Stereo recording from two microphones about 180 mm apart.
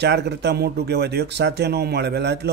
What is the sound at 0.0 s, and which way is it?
Speech, 70° right (ahead or behind).